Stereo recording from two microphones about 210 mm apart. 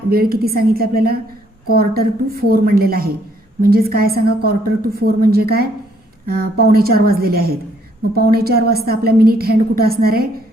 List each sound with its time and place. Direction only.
0.1 s a woman's voice: 45° right (ahead or behind)